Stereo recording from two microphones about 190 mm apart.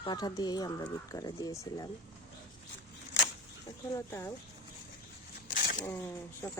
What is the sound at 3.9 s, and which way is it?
Speech, 15° left (ahead or behind).